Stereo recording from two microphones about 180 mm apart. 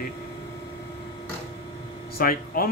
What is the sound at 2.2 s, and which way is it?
Speech, 55° left (ahead or behind).